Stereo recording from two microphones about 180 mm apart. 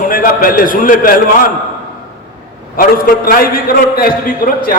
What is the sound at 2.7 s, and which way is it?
A man's voice, 50° left (ahead or behind).